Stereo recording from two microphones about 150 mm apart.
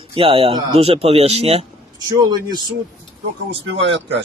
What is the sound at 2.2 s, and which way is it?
Speech, 25° right (ahead or behind).